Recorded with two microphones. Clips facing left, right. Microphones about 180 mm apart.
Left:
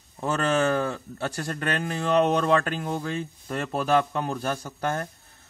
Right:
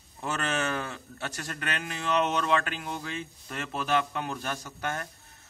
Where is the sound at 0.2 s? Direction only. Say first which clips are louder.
Left 7 dB; 35° left (ahead or behind).